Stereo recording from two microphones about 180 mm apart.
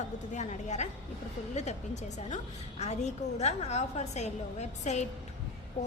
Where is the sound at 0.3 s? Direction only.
40° left (ahead or behind).